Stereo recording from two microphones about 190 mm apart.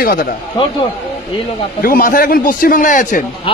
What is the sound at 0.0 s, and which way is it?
Speech, 50° left (ahead or behind).